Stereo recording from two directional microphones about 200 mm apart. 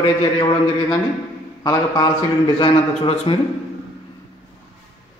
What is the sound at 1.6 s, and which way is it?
A man's voice, 20° left (ahead or behind).